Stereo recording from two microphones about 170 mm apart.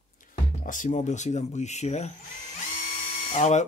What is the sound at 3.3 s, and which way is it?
Speech, 45° left (ahead or behind).